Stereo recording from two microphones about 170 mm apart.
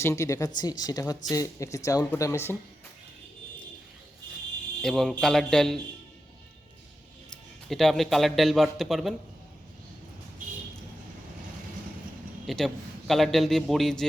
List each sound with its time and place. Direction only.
0.0 s speech: 15° left (ahead or behind)
4.8 s a man's voice: centre (ahead or behind)
7.3 s speech: centre (ahead or behind)
12.5 s a man's voice: centre (ahead or behind)